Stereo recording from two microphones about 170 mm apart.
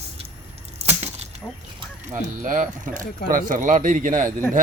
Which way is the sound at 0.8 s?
40° right (ahead or behind).